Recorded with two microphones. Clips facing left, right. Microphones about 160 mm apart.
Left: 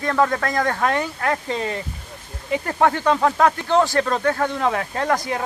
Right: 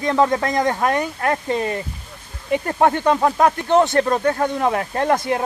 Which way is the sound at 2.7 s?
20° right (ahead or behind).